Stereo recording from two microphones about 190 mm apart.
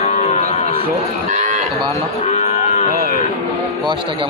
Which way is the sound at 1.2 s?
40° right (ahead or behind).